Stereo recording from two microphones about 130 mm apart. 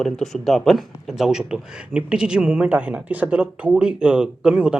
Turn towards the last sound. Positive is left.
turn(degrees=-5)  # may be behind; listen again after turning